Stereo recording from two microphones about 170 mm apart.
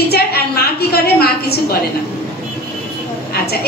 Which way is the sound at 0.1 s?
70° left (ahead or behind).